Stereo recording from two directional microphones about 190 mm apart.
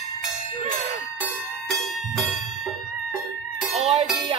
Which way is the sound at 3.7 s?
30° right (ahead or behind).